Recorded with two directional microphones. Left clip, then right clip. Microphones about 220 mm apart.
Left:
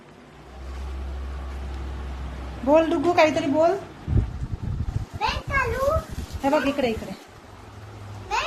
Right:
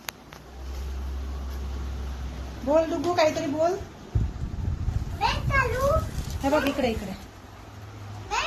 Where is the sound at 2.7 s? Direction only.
40° left (ahead or behind).